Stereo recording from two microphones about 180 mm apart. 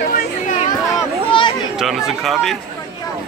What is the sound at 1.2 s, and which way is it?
Chatter, 30° left (ahead or behind).